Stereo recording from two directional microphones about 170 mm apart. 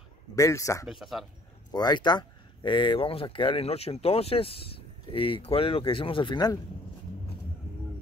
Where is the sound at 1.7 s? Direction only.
25° left (ahead or behind).